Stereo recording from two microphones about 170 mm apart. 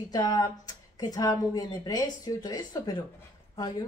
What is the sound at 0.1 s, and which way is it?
Speech, 25° left (ahead or behind).